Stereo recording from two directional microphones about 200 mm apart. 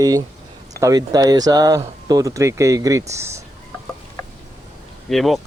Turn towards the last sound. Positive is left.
turn(degrees=0)  # may be behind; listen again after turning